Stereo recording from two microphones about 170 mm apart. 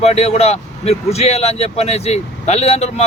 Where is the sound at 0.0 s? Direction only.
40° left (ahead or behind).